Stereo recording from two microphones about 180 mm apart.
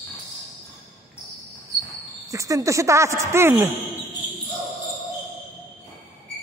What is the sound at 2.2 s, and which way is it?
Speech, 20° right (ahead or behind).